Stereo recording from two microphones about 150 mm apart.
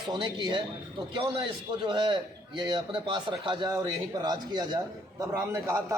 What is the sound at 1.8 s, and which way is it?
A man's voice, 35° right (ahead or behind).